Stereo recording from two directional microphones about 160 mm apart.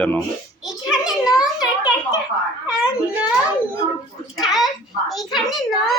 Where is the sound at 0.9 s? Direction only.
5° right (ahead or behind).